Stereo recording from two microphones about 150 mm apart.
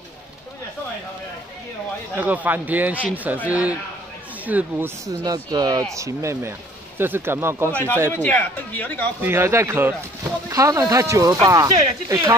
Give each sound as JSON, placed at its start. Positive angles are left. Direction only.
{"t": 2.1, "sound": "a man's voice", "side_deg": -10}
{"t": 7.7, "sound": "speech", "side_deg": 10}
{"t": 9.2, "sound": "a man's voice", "side_deg": -15}